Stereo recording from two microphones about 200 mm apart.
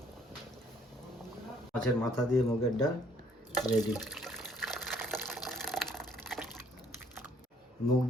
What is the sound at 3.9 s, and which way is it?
Water, centre (ahead or behind).